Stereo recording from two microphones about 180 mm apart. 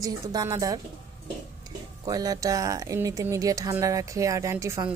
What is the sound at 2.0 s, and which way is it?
Speech, 20° right (ahead or behind).